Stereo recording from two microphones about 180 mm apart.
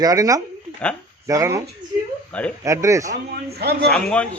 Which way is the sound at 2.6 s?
15° right (ahead or behind).